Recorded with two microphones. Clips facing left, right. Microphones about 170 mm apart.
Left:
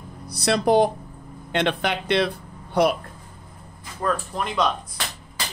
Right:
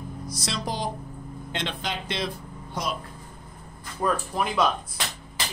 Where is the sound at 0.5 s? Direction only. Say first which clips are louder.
Left 13 dB; 60° left (ahead or behind).